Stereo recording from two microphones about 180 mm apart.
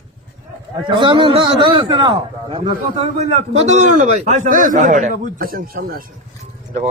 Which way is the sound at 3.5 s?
40° right (ahead or behind).